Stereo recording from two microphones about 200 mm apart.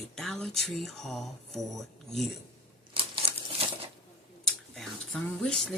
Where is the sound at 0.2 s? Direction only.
Centre (ahead or behind).